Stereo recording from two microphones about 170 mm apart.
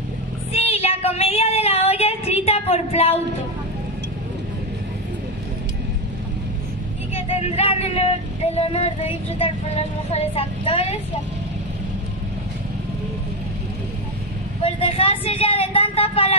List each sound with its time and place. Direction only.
0.5 s female singing: 35° left (ahead or behind)
7.2 s vehicle: 35° left (ahead or behind)
10.1 s speech: 35° left (ahead or behind)
14.6 s speech: 35° left (ahead or behind)